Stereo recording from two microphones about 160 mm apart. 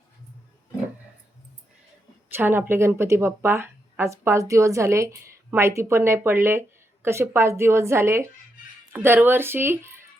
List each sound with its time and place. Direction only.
2.3 s speech: 15° right (ahead or behind)